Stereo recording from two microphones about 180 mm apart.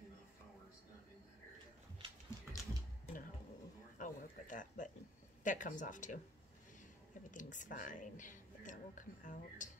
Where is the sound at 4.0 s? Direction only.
45° left (ahead or behind).